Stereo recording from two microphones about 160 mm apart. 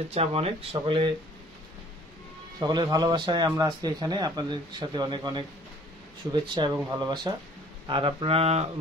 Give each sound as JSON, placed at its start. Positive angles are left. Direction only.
{"t": 0.1, "sound": "speech", "side_deg": -40}
{"t": 2.6, "sound": "speech", "side_deg": -25}